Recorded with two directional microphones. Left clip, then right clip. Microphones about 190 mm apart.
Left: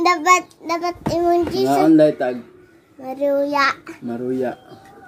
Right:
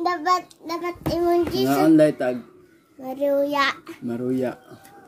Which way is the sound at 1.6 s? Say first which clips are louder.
Left 3 dB; 30° right (ahead or behind).